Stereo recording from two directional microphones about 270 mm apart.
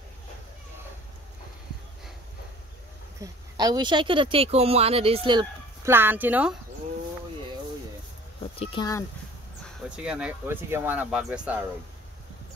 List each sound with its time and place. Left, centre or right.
3.2 s a woman's voice: centre
8.5 s speech: centre
9.8 s speech: centre